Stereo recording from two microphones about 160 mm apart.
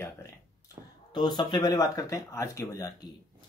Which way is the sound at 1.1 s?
25° left (ahead or behind).